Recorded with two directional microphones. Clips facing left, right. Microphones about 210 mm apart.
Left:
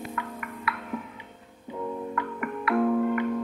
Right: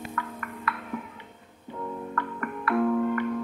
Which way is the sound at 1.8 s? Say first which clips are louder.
Left 2 dB; 10° left (ahead or behind).